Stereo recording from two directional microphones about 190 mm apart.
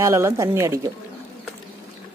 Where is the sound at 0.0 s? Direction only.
15° right (ahead or behind).